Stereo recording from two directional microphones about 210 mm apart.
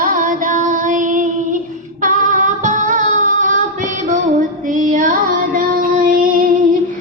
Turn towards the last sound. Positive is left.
turn(degrees=-40)  # may be behind; listen again after turning